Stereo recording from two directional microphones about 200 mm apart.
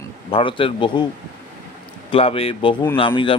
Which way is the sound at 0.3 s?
25° left (ahead or behind).